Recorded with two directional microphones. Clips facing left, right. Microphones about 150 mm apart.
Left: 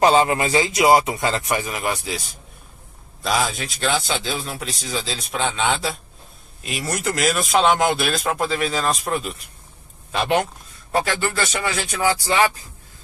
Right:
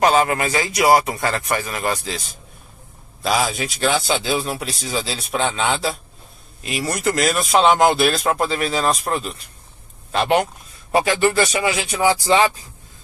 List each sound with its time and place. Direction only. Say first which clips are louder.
0.0 s a man's voice: even; 25° left (ahead or behind)
3.2 s a man's voice: right 2 dB; centre (ahead or behind)
10.9 s speech: right 5 dB; 15° right (ahead or behind)